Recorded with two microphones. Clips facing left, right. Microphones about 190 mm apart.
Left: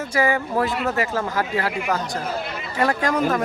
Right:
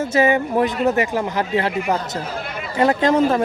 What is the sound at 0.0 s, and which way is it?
Speech, 25° right (ahead or behind).